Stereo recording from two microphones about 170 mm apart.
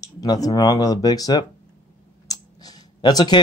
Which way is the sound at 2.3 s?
25° left (ahead or behind).